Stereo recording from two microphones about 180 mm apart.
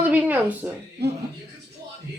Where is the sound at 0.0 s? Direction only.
10° right (ahead or behind).